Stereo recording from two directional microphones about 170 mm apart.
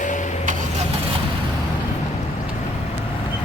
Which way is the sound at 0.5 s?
50° right (ahead or behind).